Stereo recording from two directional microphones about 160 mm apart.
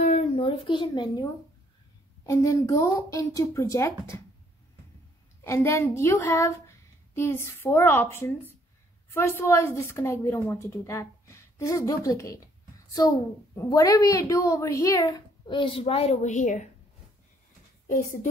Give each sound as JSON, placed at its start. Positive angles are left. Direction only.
{"t": 0.0, "sound": "a sound", "side_deg": 45}
{"t": 2.2, "sound": "a woman's voice", "side_deg": 20}
{"t": 5.4, "sound": "a woman's voice", "side_deg": 15}
{"t": 9.4, "sound": "a woman's voice", "side_deg": 15}
{"t": 17.8, "sound": "a woman's voice", "side_deg": 60}